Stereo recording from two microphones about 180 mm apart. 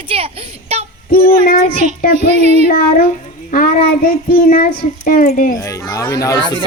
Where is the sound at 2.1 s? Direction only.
40° right (ahead or behind).